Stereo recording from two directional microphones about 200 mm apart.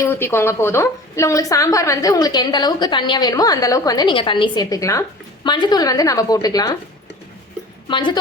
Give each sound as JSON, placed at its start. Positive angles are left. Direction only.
{"t": 0.0, "sound": "a woman's voice", "side_deg": 10}
{"t": 7.9, "sound": "a woman's voice", "side_deg": 25}